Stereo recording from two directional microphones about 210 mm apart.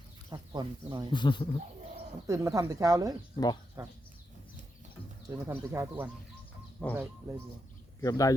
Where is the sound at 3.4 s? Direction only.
20° left (ahead or behind).